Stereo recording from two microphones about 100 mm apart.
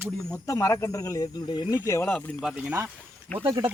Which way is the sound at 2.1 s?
5° left (ahead or behind).